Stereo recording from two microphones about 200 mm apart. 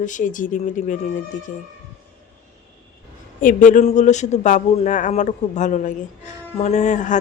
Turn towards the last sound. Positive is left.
turn(degrees=40)  # may be behind; listen again after turning